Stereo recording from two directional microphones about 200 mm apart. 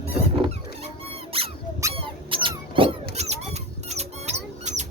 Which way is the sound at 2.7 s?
25° right (ahead or behind).